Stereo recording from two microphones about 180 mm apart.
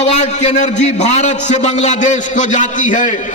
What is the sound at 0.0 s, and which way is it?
A man's voice, 40° left (ahead or behind).